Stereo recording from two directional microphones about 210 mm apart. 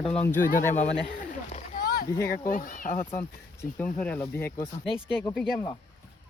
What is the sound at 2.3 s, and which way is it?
Speech, 40° left (ahead or behind).